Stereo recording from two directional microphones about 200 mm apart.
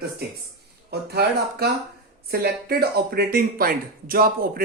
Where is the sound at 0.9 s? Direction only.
55° right (ahead or behind).